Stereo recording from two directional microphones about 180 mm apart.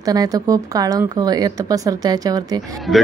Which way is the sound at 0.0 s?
20° right (ahead or behind).